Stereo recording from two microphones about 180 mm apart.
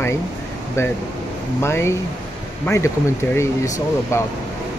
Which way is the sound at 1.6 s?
15° left (ahead or behind).